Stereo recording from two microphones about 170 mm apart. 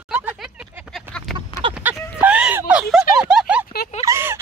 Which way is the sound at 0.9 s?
5° left (ahead or behind).